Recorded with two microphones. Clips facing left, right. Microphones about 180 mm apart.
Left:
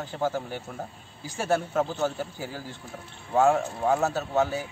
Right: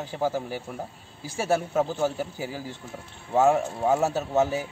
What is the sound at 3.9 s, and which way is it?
Speech, 15° right (ahead or behind).